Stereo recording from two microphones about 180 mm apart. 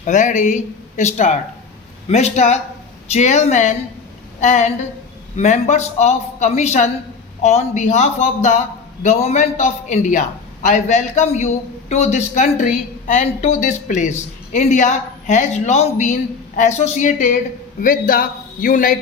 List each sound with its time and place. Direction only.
0.0 s a man's voice: 45° left (ahead or behind)